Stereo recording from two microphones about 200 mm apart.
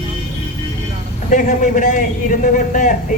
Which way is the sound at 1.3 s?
40° left (ahead or behind).